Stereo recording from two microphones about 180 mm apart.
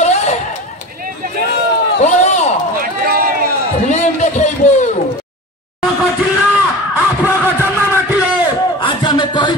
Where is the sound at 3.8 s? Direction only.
40° left (ahead or behind).